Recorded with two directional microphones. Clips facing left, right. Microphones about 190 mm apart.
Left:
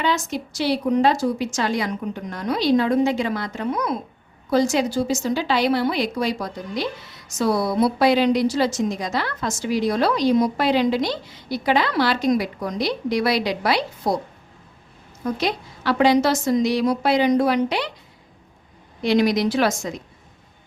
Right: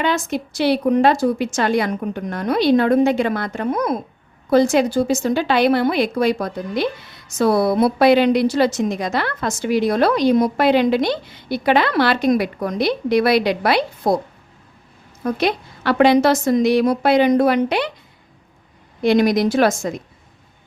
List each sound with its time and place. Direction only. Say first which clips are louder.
0.0 s a woman's voice: right 3 dB; 55° right (ahead or behind)
15.2 s a woman's voice: right 4 dB; 60° right (ahead or behind)
19.0 s a woman's voice: right 3 dB; 50° right (ahead or behind)